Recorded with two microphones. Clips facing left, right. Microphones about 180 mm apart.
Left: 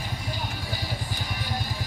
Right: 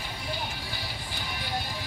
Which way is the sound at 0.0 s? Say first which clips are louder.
Left 1 dB; 45° left (ahead or behind).